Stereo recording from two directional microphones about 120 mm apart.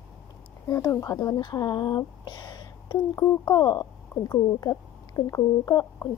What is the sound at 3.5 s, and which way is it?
Speech, 35° left (ahead or behind).